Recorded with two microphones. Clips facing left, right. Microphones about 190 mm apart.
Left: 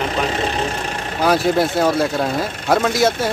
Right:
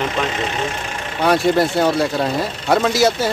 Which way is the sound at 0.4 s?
35° left (ahead or behind).